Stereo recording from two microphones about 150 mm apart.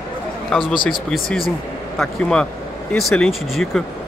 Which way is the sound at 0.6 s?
35° left (ahead or behind).